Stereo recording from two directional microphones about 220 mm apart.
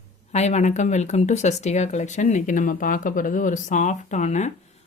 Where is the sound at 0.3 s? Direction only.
30° left (ahead or behind).